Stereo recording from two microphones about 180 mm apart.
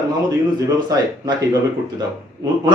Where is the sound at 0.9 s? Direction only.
25° right (ahead or behind).